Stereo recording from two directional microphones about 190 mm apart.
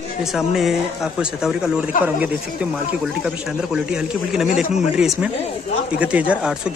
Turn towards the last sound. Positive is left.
turn(degrees=-5)  # may be behind; listen again after turning